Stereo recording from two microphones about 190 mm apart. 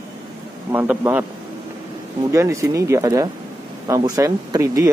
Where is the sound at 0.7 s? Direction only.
10° right (ahead or behind).